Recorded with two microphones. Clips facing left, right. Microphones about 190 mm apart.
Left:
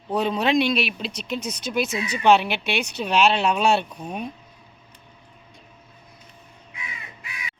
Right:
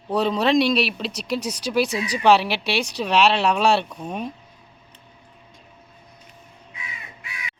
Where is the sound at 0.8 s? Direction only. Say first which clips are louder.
Right 3 dB; 35° right (ahead or behind).